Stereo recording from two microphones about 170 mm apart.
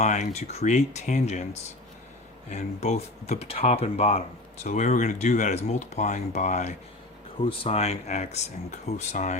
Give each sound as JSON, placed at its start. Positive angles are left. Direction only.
{"t": 0.0, "sound": "speech", "side_deg": 45}
{"t": 2.5, "sound": "speech", "side_deg": 45}